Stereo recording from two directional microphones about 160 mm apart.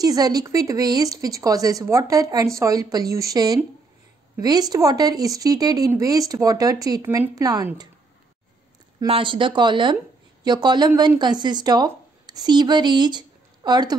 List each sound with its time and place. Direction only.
0.0 s speech: 25° right (ahead or behind)
9.0 s speech: 35° right (ahead or behind)